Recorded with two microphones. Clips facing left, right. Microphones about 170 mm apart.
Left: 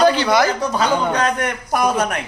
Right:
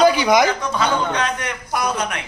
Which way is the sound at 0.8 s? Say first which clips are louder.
Left 3 dB; 45° left (ahead or behind).